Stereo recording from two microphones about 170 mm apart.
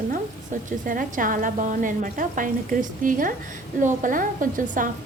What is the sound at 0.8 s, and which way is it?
A woman's voice, 55° right (ahead or behind).